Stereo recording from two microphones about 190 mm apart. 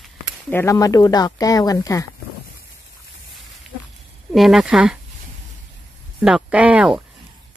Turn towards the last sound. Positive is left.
turn(degrees=-5)  # may be behind; listen again after turning